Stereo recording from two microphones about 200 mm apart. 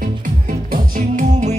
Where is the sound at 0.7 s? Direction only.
40° right (ahead or behind).